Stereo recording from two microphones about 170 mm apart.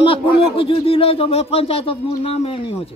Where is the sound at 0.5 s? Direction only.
35° left (ahead or behind).